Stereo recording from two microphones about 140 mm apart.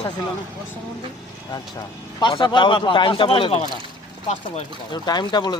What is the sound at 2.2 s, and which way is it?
Speech, 35° left (ahead or behind).